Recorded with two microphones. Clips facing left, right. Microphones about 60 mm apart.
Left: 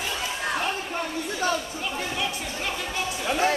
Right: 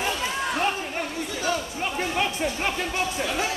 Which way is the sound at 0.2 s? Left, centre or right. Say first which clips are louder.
Right 2 dB; right.